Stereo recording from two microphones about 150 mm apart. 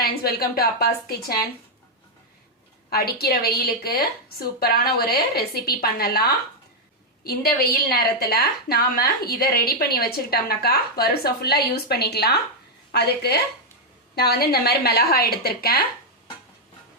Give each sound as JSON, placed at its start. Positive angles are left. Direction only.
{"t": 0.0, "sound": "a woman's voice", "side_deg": 90}
{"t": 2.9, "sound": "a woman's voice", "side_deg": 90}